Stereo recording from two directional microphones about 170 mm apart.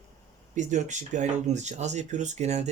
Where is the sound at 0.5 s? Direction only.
45° right (ahead or behind).